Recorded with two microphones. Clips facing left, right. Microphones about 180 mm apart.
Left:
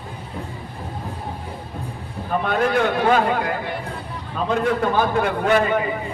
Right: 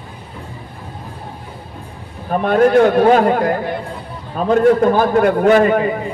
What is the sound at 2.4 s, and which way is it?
A man's voice, 45° right (ahead or behind).